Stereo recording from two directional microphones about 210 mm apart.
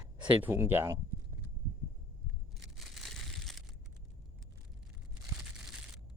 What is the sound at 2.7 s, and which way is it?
Crushing, centre (ahead or behind).